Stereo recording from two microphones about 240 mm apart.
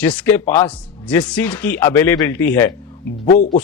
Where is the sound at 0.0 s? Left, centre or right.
Centre.